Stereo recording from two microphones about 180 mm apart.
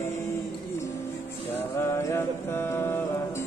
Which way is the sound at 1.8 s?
15° left (ahead or behind).